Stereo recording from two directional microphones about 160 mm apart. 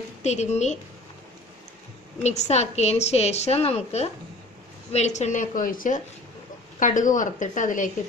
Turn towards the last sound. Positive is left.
turn(degrees=55)  # may be behind; listen again after turning